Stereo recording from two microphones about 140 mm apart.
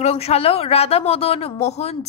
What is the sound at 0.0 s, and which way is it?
A woman's voice, 45° left (ahead or behind).